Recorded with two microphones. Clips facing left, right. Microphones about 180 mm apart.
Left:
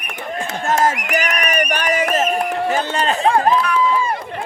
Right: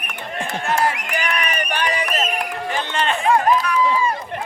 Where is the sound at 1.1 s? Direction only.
40° left (ahead or behind).